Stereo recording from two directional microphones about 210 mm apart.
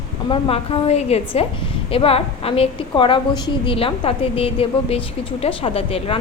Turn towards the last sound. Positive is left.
turn(degrees=25)  # may be behind; listen again after turning